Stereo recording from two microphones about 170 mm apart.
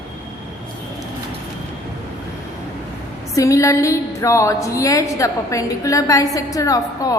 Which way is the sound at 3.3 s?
20° left (ahead or behind).